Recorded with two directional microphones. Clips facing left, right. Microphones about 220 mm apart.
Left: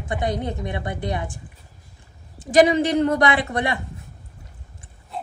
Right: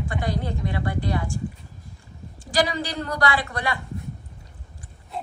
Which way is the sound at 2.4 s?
20° left (ahead or behind).